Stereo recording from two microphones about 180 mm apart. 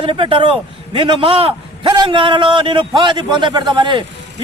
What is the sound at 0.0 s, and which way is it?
A man's voice, 30° right (ahead or behind).